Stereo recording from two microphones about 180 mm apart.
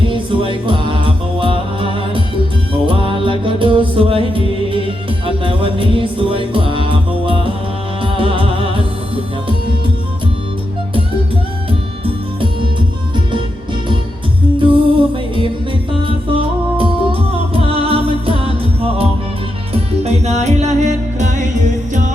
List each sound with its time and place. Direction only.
0.0 s music: 30° right (ahead or behind)
14.7 s music: 30° right (ahead or behind)
19.7 s music: 35° right (ahead or behind)